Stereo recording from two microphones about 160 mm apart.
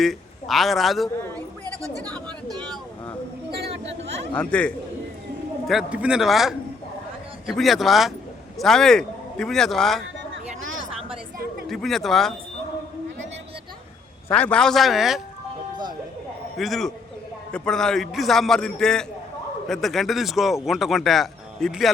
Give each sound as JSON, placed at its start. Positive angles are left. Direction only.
{"t": 0.0, "sound": "a man's voice", "side_deg": 0}
{"t": 1.8, "sound": "speech", "side_deg": -20}
{"t": 4.4, "sound": "a man's voice", "side_deg": 5}
{"t": 5.6, "sound": "a man's voice", "side_deg": -5}
{"t": 11.7, "sound": "a man's voice", "side_deg": 0}
{"t": 14.3, "sound": "a man's voice", "side_deg": 10}
{"t": 16.6, "sound": "a man's voice", "side_deg": 0}